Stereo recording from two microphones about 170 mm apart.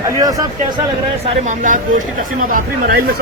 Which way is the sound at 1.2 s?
45° right (ahead or behind).